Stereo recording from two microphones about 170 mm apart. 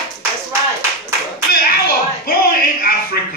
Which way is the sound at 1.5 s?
65° left (ahead or behind).